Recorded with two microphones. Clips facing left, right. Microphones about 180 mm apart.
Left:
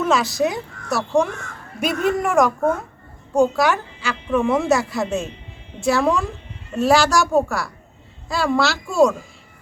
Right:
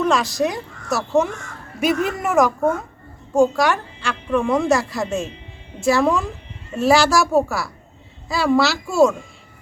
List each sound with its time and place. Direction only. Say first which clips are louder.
0.0 s a woman's voice: even; centre (ahead or behind)